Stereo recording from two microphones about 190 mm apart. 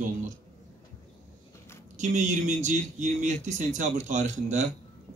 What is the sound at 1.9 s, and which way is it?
Speech, 40° right (ahead or behind).